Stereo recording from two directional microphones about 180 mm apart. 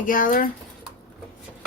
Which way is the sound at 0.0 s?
50° left (ahead or behind).